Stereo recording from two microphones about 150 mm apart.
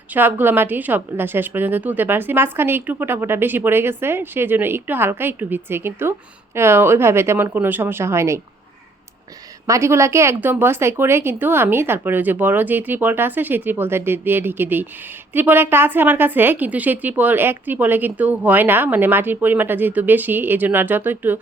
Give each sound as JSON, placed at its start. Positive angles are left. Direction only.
{"t": 0.1, "sound": "a woman's voice", "side_deg": -10}
{"t": 9.6, "sound": "a woman's voice", "side_deg": -20}